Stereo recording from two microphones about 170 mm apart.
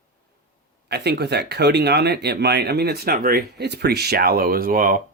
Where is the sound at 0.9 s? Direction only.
75° right (ahead or behind).